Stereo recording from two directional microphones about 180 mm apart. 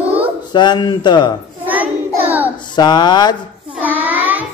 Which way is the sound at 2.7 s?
25° left (ahead or behind).